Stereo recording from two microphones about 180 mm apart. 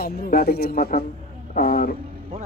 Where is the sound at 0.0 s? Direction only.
55° left (ahead or behind).